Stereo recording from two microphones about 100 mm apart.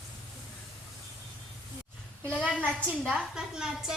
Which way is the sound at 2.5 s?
15° left (ahead or behind).